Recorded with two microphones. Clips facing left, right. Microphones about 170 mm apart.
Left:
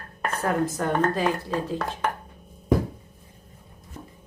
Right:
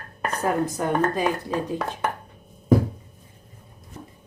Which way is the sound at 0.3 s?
15° right (ahead or behind).